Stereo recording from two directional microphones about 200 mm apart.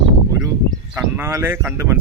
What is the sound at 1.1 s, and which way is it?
Speech, 10° right (ahead or behind).